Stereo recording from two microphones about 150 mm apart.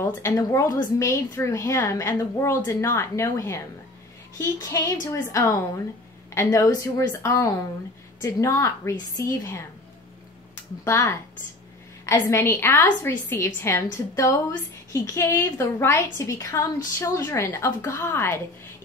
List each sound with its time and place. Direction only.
0.0 s a woman's voice: 20° left (ahead or behind)
10.8 s a woman's voice: 15° left (ahead or behind)
14.9 s a woman's voice: 20° left (ahead or behind)